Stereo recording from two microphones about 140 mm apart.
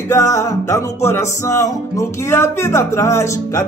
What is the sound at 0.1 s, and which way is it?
Music, 20° left (ahead or behind).